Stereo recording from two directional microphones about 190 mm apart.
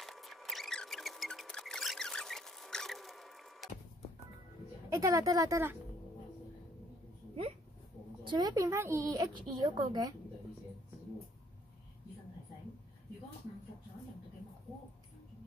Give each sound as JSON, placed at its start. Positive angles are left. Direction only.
{"t": 0.0, "sound": "a sound", "side_deg": 0}
{"t": 4.8, "sound": "speech", "side_deg": -15}
{"t": 8.2, "sound": "a woman's voice", "side_deg": -25}